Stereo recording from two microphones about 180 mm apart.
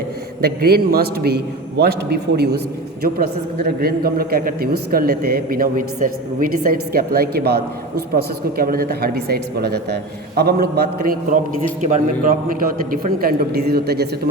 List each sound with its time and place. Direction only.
0.4 s a woman's voice: 60° right (ahead or behind)
11.8 s a man's voice: 45° right (ahead or behind); by 14.1 s 60° right (ahead or behind)